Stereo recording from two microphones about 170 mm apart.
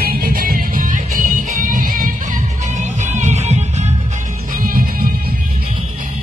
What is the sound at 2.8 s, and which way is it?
Music, 45° right (ahead or behind).